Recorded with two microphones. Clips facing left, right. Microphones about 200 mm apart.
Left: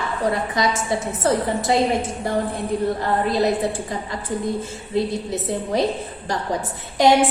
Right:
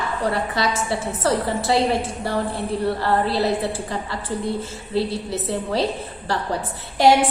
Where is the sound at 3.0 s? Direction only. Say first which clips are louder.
Even; 15° left (ahead or behind).